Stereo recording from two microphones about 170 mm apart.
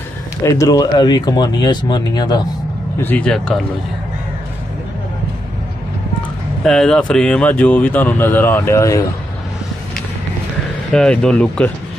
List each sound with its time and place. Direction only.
0.4 s speech: 20° left (ahead or behind)
3.0 s speech: 10° left (ahead or behind)
6.6 s speech: 5° left (ahead or behind)
10.9 s speech: 5° left (ahead or behind)